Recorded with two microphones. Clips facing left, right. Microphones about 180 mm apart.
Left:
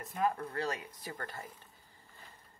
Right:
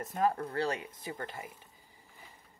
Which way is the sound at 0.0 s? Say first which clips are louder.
Right 3 dB; 40° right (ahead or behind).